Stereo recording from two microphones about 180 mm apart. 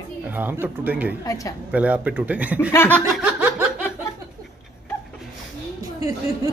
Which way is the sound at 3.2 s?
10° right (ahead or behind).